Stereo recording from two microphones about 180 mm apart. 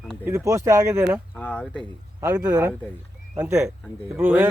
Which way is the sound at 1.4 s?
10° left (ahead or behind).